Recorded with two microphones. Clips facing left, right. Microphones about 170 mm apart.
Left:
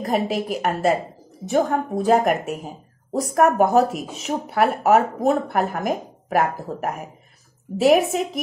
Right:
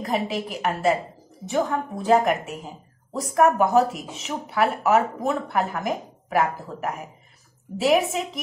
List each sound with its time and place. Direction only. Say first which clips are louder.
0.0 s speech: left 4 dB; 45° left (ahead or behind)